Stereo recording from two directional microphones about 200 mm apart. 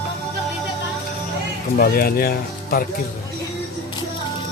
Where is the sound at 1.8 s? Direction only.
45° left (ahead or behind).